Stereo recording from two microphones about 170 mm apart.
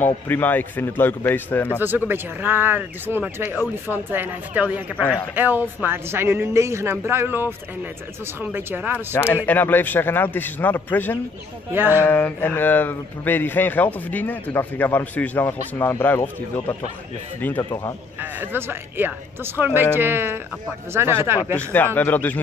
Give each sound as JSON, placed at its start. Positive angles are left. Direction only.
{"t": 0.0, "sound": "speech", "side_deg": 10}
{"t": 2.0, "sound": "speech", "side_deg": -10}
{"t": 9.1, "sound": "speech", "side_deg": 15}
{"t": 11.7, "sound": "speech", "side_deg": -10}
{"t": 12.0, "sound": "speech", "side_deg": 10}
{"t": 17.6, "sound": "a man's voice", "side_deg": 20}
{"t": 18.2, "sound": "speech", "side_deg": -10}
{"t": 21.5, "sound": "speech", "side_deg": 10}